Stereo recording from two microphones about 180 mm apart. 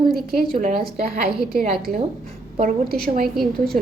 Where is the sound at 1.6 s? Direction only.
50° right (ahead or behind).